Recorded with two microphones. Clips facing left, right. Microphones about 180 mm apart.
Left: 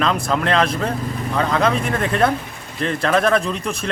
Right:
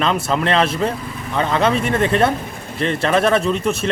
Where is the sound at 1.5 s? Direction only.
25° right (ahead or behind).